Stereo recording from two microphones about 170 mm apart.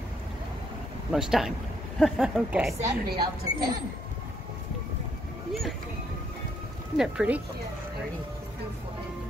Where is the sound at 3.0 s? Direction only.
65° right (ahead or behind).